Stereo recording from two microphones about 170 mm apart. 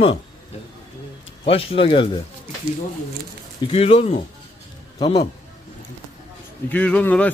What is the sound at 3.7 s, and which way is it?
Speech, 35° left (ahead or behind).